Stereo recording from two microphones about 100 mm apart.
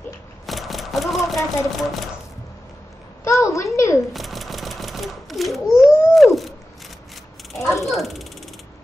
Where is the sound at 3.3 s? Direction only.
30° left (ahead or behind).